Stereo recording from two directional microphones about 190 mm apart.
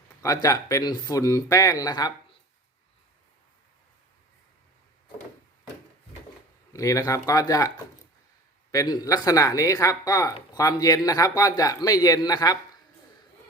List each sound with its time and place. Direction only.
0.4 s speech: 20° left (ahead or behind)
6.7 s speech: 15° left (ahead or behind)
8.7 s speech: 20° left (ahead or behind)